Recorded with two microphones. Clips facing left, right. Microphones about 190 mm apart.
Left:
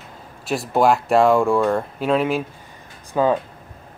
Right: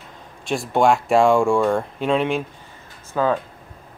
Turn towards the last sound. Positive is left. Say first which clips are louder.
# left 2 dB
turn(degrees=15)  # may be behind; listen again after turning